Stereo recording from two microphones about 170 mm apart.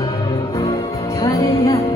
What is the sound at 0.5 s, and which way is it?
Music, 20° left (ahead or behind).